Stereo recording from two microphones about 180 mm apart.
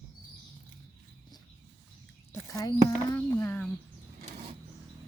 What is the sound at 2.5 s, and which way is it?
Speech, 20° left (ahead or behind).